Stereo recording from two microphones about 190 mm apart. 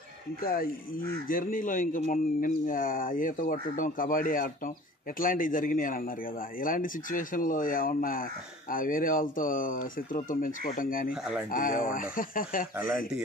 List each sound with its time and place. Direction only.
0.4 s speech: 50° left (ahead or behind)